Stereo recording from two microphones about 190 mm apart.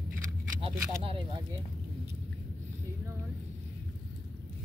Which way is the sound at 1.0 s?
25° right (ahead or behind).